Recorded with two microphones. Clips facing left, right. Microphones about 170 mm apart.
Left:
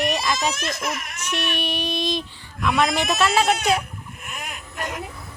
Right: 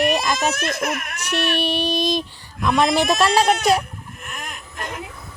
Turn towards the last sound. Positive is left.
turn(degrees=10)  # may be behind; listen again after turning